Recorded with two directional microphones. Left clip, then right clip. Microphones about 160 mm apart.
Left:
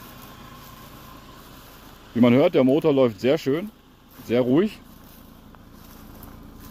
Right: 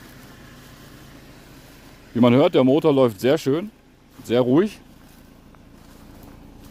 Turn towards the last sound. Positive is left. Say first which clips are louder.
# right 2 dB
turn(degrees=-45)  # may be behind; listen again after turning